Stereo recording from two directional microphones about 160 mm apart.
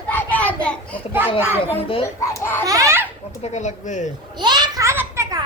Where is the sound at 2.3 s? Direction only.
15° left (ahead or behind).